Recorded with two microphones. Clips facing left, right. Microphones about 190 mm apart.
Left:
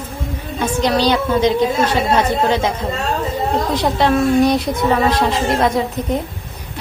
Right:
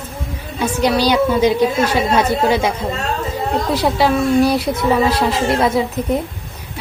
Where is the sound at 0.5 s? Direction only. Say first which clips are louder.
Right 1 dB; 10° right (ahead or behind).